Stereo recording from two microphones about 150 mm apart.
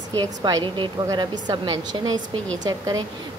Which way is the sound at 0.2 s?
25° right (ahead or behind).